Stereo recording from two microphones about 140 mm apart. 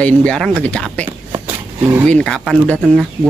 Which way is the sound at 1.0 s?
20° right (ahead or behind).